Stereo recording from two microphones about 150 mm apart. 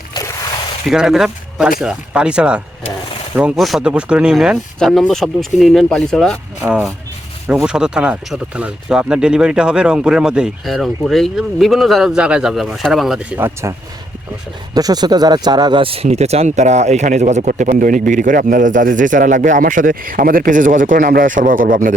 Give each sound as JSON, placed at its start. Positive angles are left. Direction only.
{"t": 0.1, "sound": "zipper", "side_deg": 25}
{"t": 0.9, "sound": "speech", "side_deg": -5}
{"t": 6.6, "sound": "speech", "side_deg": -10}